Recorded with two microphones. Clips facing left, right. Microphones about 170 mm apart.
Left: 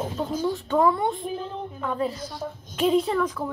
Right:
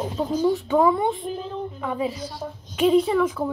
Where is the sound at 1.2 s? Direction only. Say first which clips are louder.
Right 2 dB; 5° left (ahead or behind).